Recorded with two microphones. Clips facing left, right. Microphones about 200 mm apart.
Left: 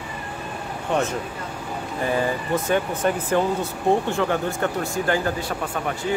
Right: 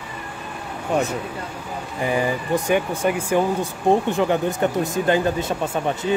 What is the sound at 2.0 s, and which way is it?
Speech, 15° right (ahead or behind).